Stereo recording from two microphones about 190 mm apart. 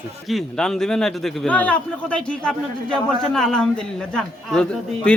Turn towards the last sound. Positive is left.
turn(degrees=5)  # may be behind; listen again after turning